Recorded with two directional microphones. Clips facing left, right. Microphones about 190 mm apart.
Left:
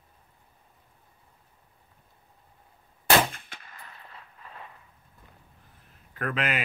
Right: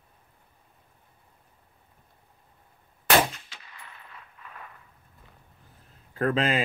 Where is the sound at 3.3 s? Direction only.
55° left (ahead or behind).